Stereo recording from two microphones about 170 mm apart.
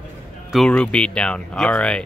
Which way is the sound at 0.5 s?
5° left (ahead or behind).